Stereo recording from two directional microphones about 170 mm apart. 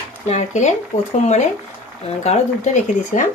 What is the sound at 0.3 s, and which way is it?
Speech, 45° left (ahead or behind).